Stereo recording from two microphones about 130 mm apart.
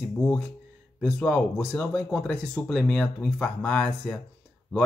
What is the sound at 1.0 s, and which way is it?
Speech, 5° left (ahead or behind).